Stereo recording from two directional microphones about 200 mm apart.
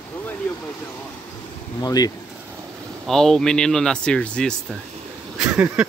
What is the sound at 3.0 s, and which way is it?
Speech, centre (ahead or behind).